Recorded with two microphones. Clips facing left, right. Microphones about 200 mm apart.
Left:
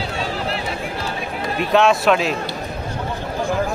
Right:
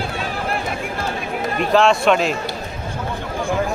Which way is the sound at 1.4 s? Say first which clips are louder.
Right 1 dB; 50° right (ahead or behind).